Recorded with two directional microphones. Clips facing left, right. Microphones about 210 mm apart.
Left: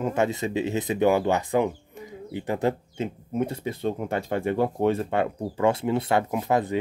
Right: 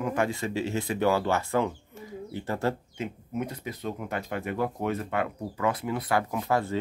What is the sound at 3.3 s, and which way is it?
Speech, 30° left (ahead or behind).